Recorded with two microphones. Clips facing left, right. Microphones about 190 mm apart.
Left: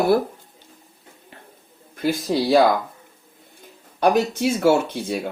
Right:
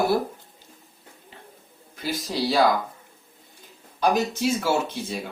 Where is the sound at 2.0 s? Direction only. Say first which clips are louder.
Left 6 dB; 50° left (ahead or behind).